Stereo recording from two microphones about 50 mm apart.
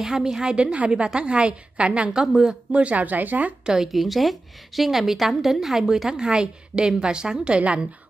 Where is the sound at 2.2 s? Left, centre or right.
Centre.